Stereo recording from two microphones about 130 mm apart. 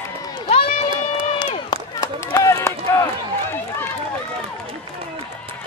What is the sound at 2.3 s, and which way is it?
Run, 20° left (ahead or behind).